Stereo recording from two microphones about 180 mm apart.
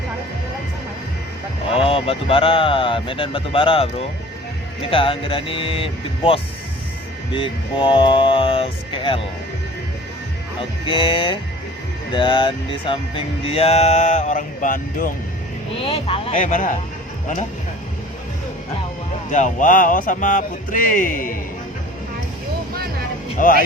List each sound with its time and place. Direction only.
1.7 s speech: 30° left (ahead or behind)
10.6 s speech: 30° left (ahead or behind); by 15.1 s 50° left (ahead or behind)
15.7 s speech: 30° left (ahead or behind)
16.3 s speech: 45° left (ahead or behind)
19.3 s speech: 45° left (ahead or behind)
23.4 s speech: 50° left (ahead or behind)